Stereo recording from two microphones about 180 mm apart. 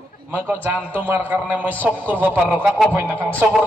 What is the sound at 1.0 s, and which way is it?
A man's voice, 10° right (ahead or behind).